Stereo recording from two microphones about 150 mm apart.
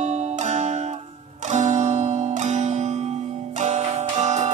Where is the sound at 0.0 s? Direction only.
50° right (ahead or behind).